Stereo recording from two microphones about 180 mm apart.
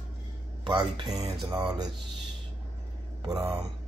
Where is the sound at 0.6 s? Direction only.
25° right (ahead or behind).